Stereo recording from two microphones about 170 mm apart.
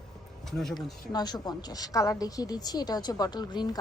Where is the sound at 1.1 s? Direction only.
25° left (ahead or behind).